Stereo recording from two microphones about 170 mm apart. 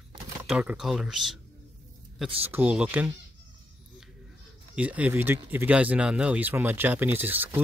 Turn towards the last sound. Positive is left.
turn(degrees=-10)  # may be behind; listen again after turning